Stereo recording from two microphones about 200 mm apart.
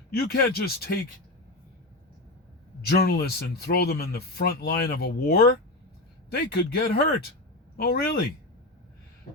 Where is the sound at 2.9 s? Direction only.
50° left (ahead or behind).